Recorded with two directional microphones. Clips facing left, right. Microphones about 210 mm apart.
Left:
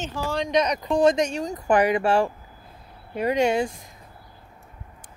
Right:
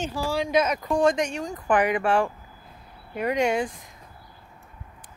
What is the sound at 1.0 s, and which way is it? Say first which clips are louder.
Speech: left 4 dB; 40° left (ahead or behind).